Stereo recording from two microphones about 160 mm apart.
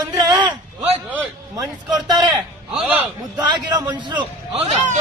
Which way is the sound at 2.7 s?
10° right (ahead or behind).